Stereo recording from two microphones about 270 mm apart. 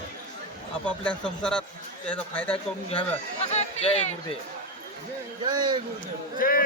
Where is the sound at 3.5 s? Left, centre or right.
Left.